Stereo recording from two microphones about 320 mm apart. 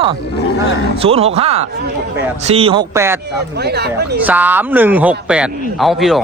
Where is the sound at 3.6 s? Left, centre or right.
Right.